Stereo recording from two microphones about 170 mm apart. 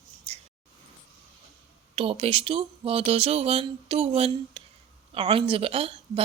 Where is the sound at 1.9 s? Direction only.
35° right (ahead or behind).